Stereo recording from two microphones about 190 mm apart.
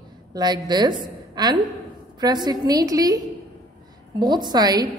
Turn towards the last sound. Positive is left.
turn(degrees=-20)  # may be behind; listen again after turning